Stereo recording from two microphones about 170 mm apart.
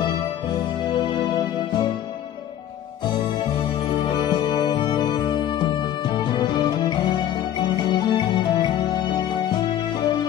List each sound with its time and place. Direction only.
4.1 s music: 25° left (ahead or behind)